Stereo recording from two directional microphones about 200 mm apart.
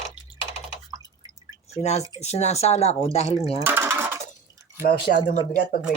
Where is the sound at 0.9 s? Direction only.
20° right (ahead or behind).